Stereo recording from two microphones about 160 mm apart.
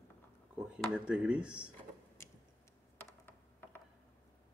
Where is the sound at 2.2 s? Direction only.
15° left (ahead or behind).